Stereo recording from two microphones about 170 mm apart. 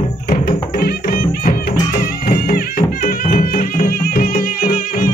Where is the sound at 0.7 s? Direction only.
60° left (ahead or behind).